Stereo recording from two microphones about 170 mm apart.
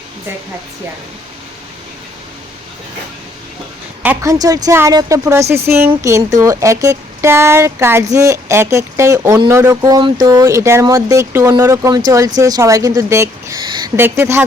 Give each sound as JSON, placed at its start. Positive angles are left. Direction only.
{"t": 4.0, "sound": "speech", "side_deg": -15}
{"t": 13.9, "sound": "speech", "side_deg": -15}